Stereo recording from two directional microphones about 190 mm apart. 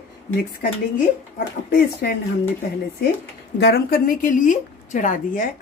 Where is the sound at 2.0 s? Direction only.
55° left (ahead or behind).